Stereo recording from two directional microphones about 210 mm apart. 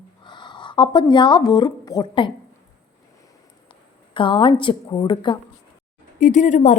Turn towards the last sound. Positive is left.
turn(degrees=35)  # may be behind; listen again after turning